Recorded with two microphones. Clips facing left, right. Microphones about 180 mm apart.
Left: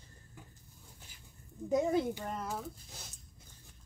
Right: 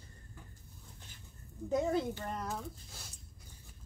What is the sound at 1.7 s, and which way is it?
Speech, 15° left (ahead or behind).